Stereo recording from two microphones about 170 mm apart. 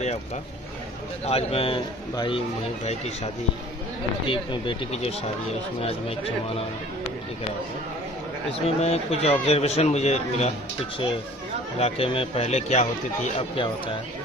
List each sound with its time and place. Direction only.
1.2 s speech: 35° left (ahead or behind)
4.3 s speech: 30° left (ahead or behind)
8.5 s speech: 35° left (ahead or behind)
11.8 s speech: 35° left (ahead or behind)